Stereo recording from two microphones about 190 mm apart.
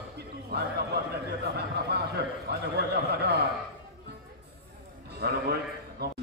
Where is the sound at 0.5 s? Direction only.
60° right (ahead or behind).